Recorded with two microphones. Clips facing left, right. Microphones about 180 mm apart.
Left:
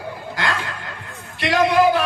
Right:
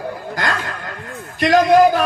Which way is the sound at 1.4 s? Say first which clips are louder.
Right 5 dB; 45° right (ahead or behind).